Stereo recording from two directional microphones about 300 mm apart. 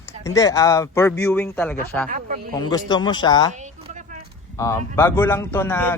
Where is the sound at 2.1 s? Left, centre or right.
Right.